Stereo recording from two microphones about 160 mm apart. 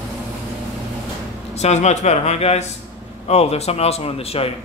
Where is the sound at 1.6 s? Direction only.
45° left (ahead or behind).